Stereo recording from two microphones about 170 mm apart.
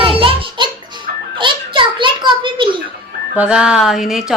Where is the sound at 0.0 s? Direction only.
35° right (ahead or behind).